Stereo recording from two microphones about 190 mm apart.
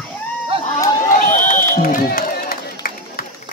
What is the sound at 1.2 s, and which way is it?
Run, 45° left (ahead or behind).